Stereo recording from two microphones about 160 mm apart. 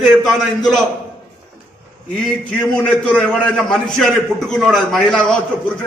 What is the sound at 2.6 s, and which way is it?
A man's voice, 5° left (ahead or behind).